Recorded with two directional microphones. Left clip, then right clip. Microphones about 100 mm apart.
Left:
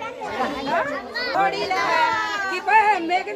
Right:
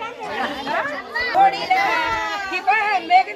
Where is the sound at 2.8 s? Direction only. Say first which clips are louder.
Right 3 dB; 35° left (ahead or behind).